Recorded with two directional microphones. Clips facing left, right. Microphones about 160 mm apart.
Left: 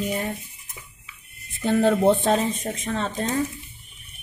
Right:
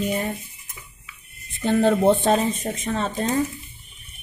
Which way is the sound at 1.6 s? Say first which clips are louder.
Right 1 dB; centre (ahead or behind).